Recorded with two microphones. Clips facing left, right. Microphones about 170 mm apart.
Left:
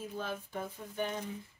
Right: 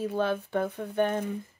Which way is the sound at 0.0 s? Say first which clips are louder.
Right 11 dB; 70° right (ahead or behind).